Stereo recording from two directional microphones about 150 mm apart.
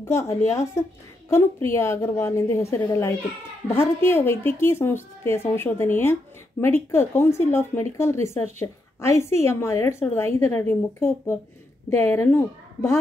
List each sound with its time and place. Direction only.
0.0 s a woman's voice: 20° left (ahead or behind)